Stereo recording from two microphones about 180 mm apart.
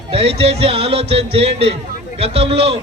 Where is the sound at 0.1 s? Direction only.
30° right (ahead or behind).